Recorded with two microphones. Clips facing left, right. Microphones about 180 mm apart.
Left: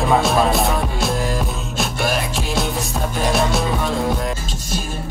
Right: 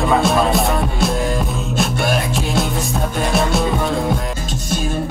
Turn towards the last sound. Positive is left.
turn(degrees=0)  # may be behind; listen again after turning